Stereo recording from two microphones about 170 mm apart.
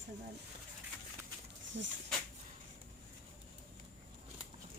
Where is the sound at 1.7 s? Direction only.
90° right.